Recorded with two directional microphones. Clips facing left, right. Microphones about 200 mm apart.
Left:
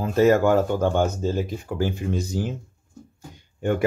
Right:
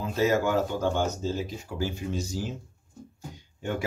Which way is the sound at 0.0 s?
55° left (ahead or behind).